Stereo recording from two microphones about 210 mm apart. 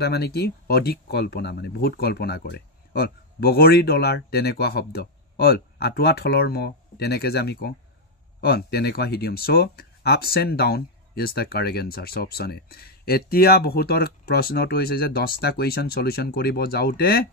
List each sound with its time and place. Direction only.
0.0 s speech: 50° left (ahead or behind)